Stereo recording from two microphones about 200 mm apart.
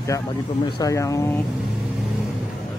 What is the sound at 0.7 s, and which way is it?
Speech, 15° left (ahead or behind).